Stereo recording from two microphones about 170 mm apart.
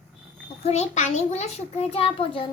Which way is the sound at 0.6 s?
40° left (ahead or behind).